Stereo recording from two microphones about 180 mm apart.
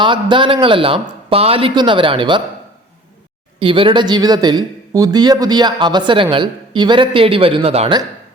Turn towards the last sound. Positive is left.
turn(degrees=-35)  # may be behind; listen again after turning